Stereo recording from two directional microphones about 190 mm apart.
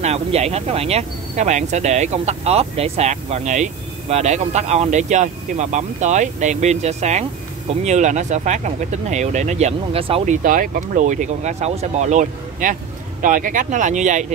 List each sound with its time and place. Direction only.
0.0 s speech: 35° right (ahead or behind)